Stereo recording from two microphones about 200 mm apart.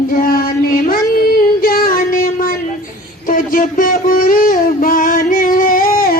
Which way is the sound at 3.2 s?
45° left (ahead or behind).